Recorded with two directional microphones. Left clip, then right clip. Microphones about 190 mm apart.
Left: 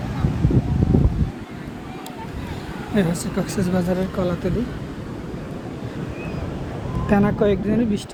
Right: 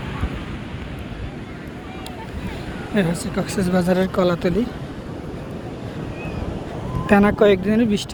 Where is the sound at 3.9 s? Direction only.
15° right (ahead or behind).